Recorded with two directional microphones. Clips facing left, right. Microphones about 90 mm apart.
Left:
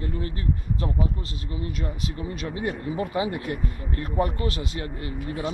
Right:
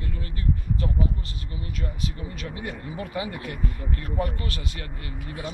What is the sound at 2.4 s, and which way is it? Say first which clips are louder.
Speech: left 5 dB; 30° left (ahead or behind).